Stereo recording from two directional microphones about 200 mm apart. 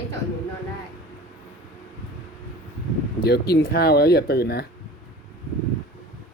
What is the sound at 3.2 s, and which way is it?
Speech, 55° left (ahead or behind).